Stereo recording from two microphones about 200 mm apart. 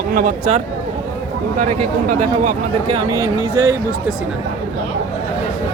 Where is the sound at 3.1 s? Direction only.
15° right (ahead or behind).